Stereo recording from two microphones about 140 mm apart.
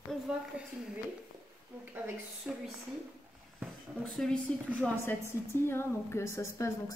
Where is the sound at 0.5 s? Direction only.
10° right (ahead or behind).